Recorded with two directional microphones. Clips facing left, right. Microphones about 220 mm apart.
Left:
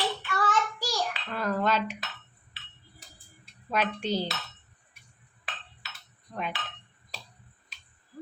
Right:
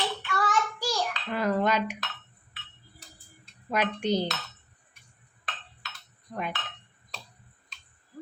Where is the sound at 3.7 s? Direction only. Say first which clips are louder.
Right 2 dB; 15° right (ahead or behind).